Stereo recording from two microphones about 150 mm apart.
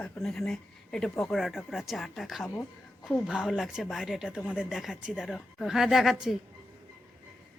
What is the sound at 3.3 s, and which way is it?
Speech, centre (ahead or behind).